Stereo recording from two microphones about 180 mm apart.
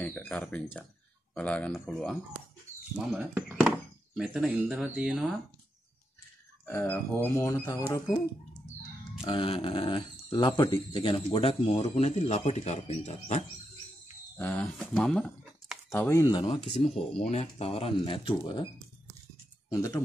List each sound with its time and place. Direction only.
0.0 s speech: 10° left (ahead or behind)
3.0 s speech: 5° right (ahead or behind)
6.6 s speech: 10° left (ahead or behind)
9.2 s speech: 30° left (ahead or behind)
14.3 s speech: 10° left (ahead or behind)
15.9 s speech: 15° left (ahead or behind)
19.7 s speech: 15° left (ahead or behind)